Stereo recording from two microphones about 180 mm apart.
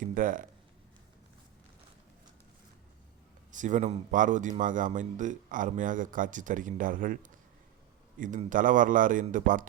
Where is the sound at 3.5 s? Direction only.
45° right (ahead or behind).